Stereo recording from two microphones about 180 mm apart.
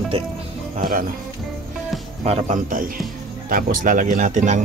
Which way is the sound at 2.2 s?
35° right (ahead or behind).